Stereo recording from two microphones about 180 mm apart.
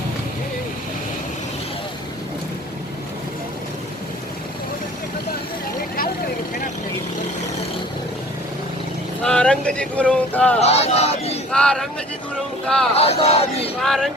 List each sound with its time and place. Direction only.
9.2 s speech: 5° left (ahead or behind)
10.6 s speech: 35° left (ahead or behind)
11.5 s speech: 5° left (ahead or behind)
13.0 s speech: 35° left (ahead or behind)
13.8 s speech: centre (ahead or behind)